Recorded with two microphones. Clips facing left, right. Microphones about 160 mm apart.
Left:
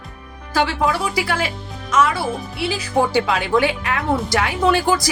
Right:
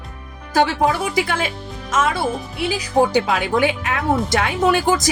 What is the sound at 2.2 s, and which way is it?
Speech, 15° right (ahead or behind).